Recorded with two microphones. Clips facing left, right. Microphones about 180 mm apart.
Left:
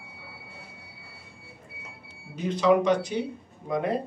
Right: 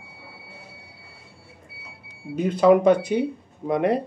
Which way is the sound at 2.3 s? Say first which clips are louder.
Right 5 dB; 55° right (ahead or behind).